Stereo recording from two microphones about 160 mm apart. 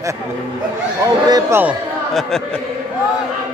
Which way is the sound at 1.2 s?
25° right (ahead or behind).